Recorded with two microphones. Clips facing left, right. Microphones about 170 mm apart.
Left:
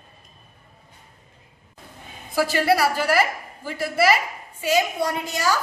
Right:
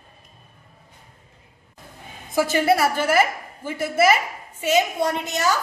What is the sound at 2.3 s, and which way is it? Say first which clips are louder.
A woman's voice: right 1 dB; 20° right (ahead or behind).